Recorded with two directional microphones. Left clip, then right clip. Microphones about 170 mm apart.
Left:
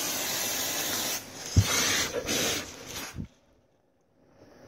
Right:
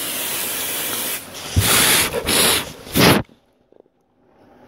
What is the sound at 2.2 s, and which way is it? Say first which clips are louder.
Rub: right 12 dB; 25° right (ahead or behind).